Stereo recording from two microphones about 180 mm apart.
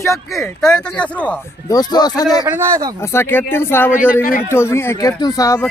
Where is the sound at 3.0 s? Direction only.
15° left (ahead or behind).